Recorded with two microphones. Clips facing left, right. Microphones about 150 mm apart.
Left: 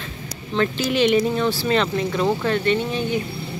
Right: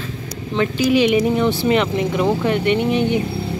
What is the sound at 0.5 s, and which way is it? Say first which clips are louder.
Speech: right 4 dB; 10° right (ahead or behind).